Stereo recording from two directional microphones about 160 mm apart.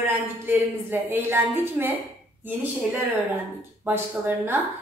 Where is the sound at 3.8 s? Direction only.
10° right (ahead or behind).